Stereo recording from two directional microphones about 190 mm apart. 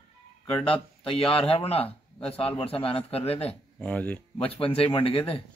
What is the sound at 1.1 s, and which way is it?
A man's voice, 30° left (ahead or behind).